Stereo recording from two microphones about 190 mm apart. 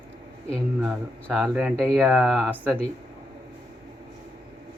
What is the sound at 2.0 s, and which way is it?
Mantra, 10° right (ahead or behind).